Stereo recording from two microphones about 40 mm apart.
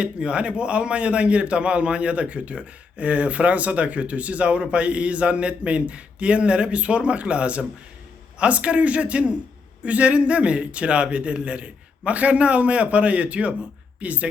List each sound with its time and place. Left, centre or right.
0.0 s a man's voice: right